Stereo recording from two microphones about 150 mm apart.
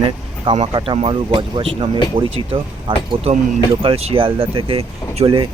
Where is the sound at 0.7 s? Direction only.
30° right (ahead or behind).